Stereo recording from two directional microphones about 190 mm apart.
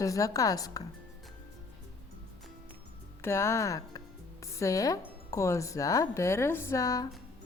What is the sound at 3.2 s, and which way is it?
Speech, 15° left (ahead or behind).